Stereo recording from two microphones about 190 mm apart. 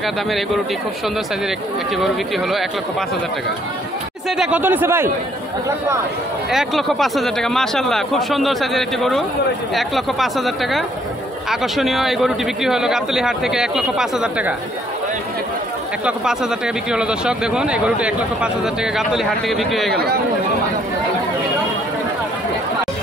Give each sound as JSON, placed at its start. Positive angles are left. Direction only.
{"t": 2.0, "sound": "speech", "side_deg": 0}
{"t": 4.4, "sound": "speech", "side_deg": -10}
{"t": 6.5, "sound": "speech", "side_deg": 0}
{"t": 16.1, "sound": "speech", "side_deg": -5}
{"t": 19.9, "sound": "speech", "side_deg": -55}